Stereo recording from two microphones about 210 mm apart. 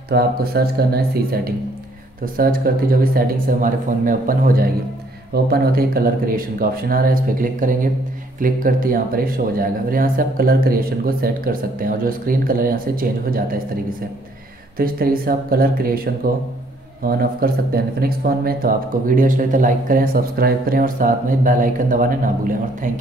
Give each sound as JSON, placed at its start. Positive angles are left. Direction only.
{"t": 0.1, "sound": "speech", "side_deg": -45}
{"t": 17.0, "sound": "speech", "side_deg": -45}